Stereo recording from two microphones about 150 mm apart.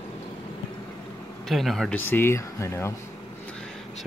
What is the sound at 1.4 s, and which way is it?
Speech, centre (ahead or behind).